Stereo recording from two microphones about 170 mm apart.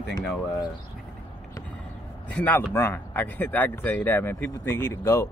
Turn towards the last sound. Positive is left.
turn(degrees=15)  # may be behind; listen again after turning